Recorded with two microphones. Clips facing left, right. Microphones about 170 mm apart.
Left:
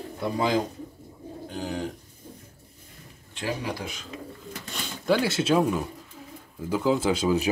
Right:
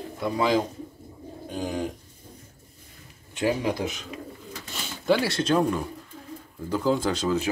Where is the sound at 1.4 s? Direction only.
15° right (ahead or behind).